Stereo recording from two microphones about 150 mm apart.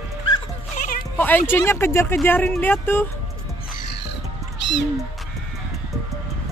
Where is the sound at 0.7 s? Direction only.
65° left (ahead or behind).